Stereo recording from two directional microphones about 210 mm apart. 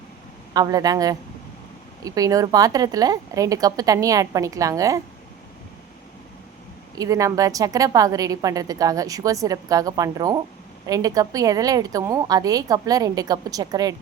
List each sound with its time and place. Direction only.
0.5 s a woman's voice: 20° right (ahead or behind)
6.9 s a woman's voice: 15° right (ahead or behind)